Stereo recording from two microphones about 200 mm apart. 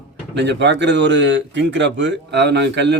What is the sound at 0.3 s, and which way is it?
A man's voice, 60° right (ahead or behind).